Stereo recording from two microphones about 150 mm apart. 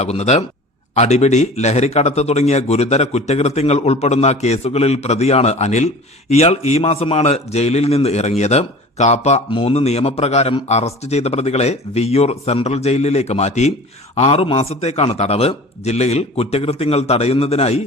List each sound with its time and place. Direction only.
0.0 s speech: 45° left (ahead or behind)